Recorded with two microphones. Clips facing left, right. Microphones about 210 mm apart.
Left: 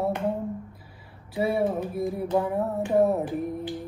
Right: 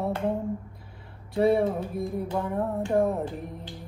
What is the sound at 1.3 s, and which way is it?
Music, 5° left (ahead or behind).